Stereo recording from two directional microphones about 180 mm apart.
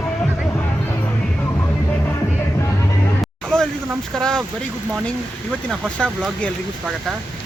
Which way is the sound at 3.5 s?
5° left (ahead or behind).